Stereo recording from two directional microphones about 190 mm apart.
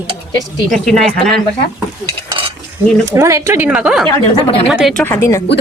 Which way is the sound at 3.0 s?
15° right (ahead or behind).